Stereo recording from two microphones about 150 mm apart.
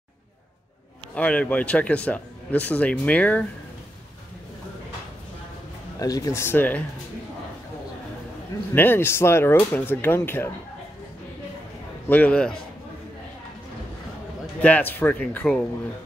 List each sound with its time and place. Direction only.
1.1 s speech: 10° left (ahead or behind)
5.9 s speech: 25° left (ahead or behind)
8.7 s speech: 15° left (ahead or behind)
12.1 s speech: 10° left (ahead or behind)
14.6 s speech: 10° left (ahead or behind)